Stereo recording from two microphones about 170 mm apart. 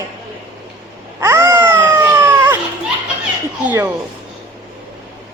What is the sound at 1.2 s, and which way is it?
Baby cry, 15° right (ahead or behind).